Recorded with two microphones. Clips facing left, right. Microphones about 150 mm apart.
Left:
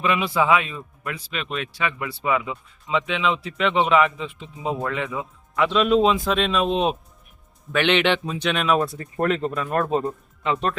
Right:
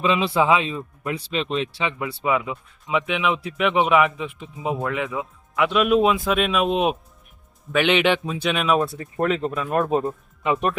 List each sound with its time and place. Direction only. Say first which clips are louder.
0.0 s speech: right 2 dB; 20° right (ahead or behind)